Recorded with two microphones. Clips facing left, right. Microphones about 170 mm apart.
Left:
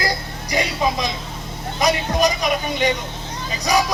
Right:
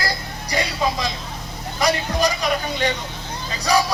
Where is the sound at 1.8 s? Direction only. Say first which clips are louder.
Left 2 dB; 20° left (ahead or behind).